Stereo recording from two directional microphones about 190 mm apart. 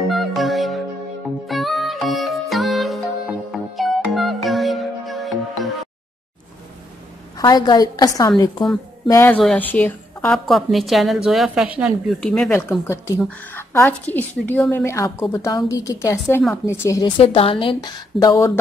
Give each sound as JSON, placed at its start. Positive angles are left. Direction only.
{"t": 0.1, "sound": "music", "side_deg": 0}
{"t": 7.3, "sound": "a woman's voice", "side_deg": 20}
{"t": 17.2, "sound": "a woman's voice", "side_deg": 30}